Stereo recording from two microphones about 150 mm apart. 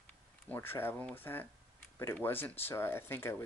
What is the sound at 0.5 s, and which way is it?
Speech, 15° left (ahead or behind).